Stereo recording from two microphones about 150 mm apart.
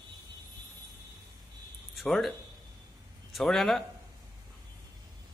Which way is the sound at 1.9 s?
Centre (ahead or behind).